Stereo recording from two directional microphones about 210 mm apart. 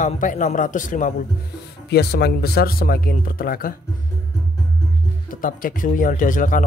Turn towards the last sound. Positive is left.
turn(degrees=40)  # may be behind; listen again after turning